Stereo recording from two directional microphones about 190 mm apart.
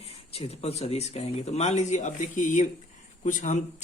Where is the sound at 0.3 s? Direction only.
35° left (ahead or behind).